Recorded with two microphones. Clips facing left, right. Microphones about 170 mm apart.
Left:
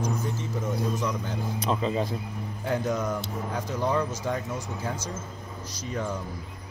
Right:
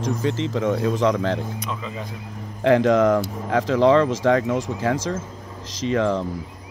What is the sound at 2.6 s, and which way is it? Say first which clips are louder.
A man's voice: right 12 dB; 90° right.